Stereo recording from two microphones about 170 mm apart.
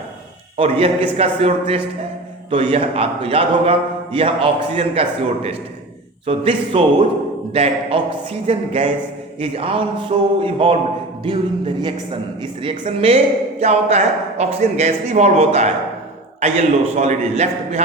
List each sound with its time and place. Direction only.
0.5 s a man's voice: 35° right (ahead or behind)